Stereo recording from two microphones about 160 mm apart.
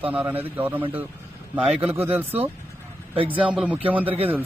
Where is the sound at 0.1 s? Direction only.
10° right (ahead or behind).